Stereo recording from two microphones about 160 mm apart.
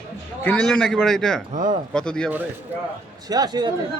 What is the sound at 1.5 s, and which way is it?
Speech, 55° right (ahead or behind).